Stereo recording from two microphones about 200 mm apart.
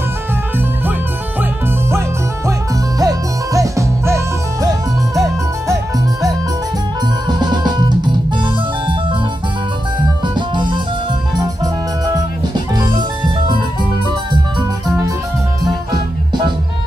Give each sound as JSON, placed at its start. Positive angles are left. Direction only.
{"t": 1.9, "sound": "music", "side_deg": -15}
{"t": 7.2, "sound": "drum", "side_deg": -20}
{"t": 10.2, "sound": "organ", "side_deg": -25}
{"t": 11.3, "sound": "music", "side_deg": -20}
{"t": 12.7, "sound": "music", "side_deg": -20}